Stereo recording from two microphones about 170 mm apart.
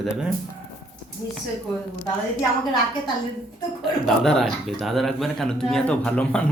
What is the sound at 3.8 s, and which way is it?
Speech, centre (ahead or behind).